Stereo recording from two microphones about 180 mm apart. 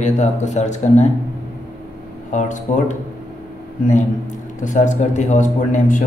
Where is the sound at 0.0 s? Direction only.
40° left (ahead or behind).